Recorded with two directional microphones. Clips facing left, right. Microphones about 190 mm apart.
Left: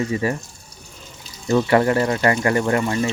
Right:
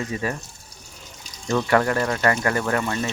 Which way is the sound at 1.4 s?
15° left (ahead or behind).